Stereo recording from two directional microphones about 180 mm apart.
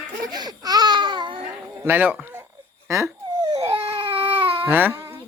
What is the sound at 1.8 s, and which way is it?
Speech, 10° right (ahead or behind).